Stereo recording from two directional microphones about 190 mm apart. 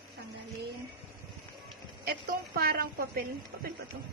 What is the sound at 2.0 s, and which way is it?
A woman's voice, 55° right (ahead or behind).